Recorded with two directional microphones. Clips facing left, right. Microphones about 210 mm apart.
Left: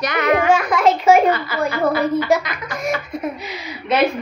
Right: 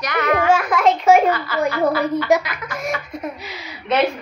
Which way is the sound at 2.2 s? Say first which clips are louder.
Right 1 dB; 15° right (ahead or behind).